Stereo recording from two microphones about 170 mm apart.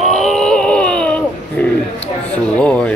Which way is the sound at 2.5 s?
5° left (ahead or behind).